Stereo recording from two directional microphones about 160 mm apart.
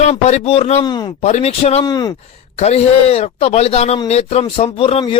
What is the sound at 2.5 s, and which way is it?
Speech, 40° left (ahead or behind).